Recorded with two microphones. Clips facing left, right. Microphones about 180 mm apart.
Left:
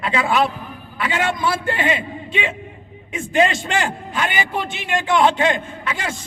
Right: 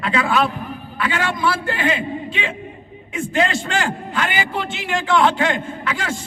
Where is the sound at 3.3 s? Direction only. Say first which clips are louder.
Left 2 dB; 20° left (ahead or behind).